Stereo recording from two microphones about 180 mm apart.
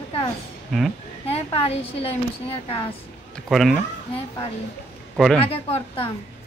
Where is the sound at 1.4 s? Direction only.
30° left (ahead or behind).